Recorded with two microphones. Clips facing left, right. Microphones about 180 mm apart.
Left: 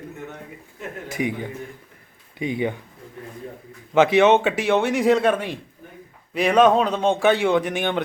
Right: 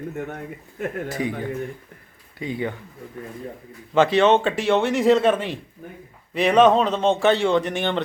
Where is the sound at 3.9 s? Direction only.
10° left (ahead or behind).